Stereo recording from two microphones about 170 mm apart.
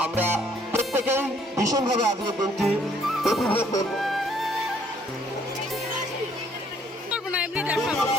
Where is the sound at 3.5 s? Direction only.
15° left (ahead or behind).